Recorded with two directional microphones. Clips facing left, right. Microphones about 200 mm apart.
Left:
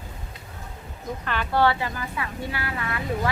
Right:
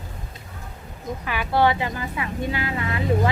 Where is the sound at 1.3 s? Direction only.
10° right (ahead or behind).